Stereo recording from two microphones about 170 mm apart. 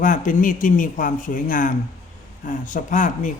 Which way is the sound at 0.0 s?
50° left (ahead or behind).